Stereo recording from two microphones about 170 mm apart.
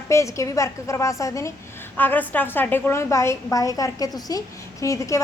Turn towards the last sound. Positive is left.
turn(degrees=20)  # may be behind; listen again after turning